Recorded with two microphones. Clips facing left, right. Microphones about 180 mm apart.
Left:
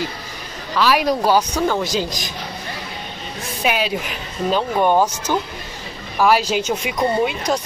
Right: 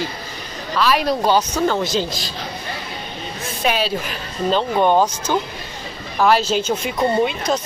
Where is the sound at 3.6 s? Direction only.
15° left (ahead or behind).